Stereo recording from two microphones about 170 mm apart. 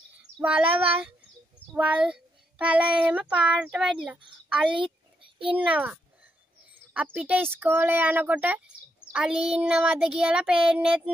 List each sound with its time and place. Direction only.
0.4 s speech: 10° right (ahead or behind)
5.2 s a sound: 30° right (ahead or behind)
5.7 s speech: 10° right (ahead or behind)
9.1 s child singing: 5° right (ahead or behind)